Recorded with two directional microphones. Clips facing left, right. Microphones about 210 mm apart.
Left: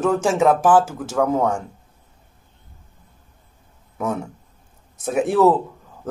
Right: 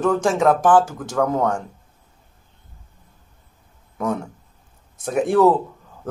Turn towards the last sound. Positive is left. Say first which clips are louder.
# even
turn(degrees=5)  # may be behind; listen again after turning